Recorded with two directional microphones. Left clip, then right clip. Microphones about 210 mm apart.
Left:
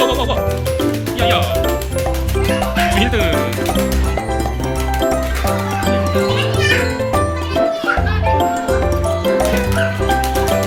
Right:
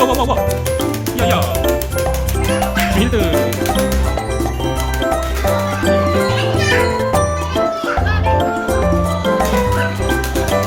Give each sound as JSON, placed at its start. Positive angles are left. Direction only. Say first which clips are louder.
{"t": 0.0, "sound": "speech", "louder": "right 1 dB", "side_deg": -30}